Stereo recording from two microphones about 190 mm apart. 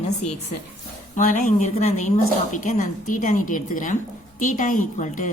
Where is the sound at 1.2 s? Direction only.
40° left (ahead or behind).